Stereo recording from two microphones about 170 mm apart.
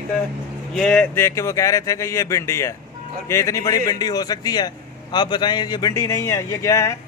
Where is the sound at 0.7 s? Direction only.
5° left (ahead or behind).